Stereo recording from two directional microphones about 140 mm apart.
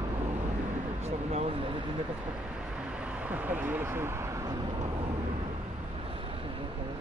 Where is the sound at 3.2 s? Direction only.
10° right (ahead or behind).